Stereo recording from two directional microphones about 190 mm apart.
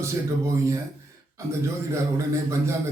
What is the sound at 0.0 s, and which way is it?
A man's voice, 15° right (ahead or behind).